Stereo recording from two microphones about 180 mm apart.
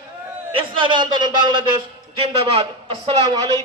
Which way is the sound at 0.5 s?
30° right (ahead or behind).